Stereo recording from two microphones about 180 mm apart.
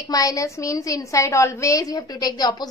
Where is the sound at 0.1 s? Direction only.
20° left (ahead or behind).